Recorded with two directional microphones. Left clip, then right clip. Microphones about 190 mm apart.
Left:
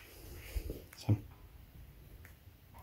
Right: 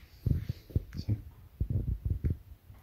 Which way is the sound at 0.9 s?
20° left (ahead or behind).